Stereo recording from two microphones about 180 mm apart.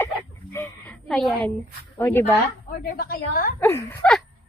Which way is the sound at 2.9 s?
55° left (ahead or behind).